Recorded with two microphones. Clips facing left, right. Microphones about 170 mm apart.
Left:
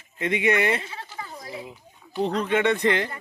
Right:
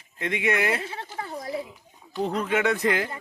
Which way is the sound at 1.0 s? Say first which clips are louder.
Right 3 dB; 50° right (ahead or behind).